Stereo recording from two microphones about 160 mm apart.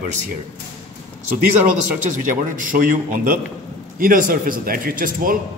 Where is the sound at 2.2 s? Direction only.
55° right (ahead or behind).